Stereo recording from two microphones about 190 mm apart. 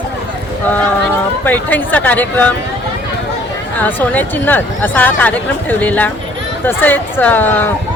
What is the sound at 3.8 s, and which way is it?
Speech, 10° left (ahead or behind).